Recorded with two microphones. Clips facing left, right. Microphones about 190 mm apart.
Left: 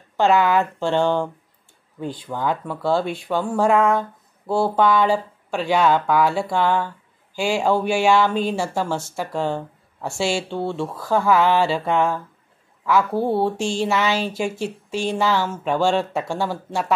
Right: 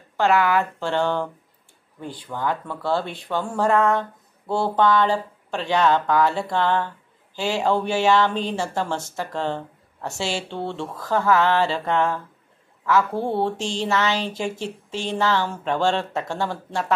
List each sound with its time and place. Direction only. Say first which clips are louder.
0.2 s a woman's voice: left 2 dB; 20° left (ahead or behind)